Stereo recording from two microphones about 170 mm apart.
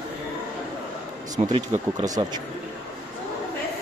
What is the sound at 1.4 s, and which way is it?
Speech, 20° right (ahead or behind).